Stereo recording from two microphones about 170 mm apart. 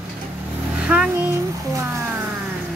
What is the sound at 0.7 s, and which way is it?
Speech, 5° right (ahead or behind).